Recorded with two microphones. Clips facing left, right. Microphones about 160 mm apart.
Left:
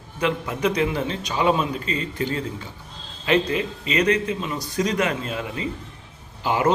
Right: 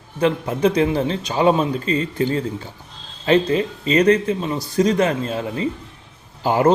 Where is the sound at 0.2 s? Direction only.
30° right (ahead or behind).